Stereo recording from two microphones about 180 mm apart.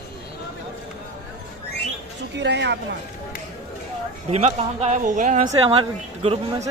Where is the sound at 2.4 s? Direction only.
75° right (ahead or behind).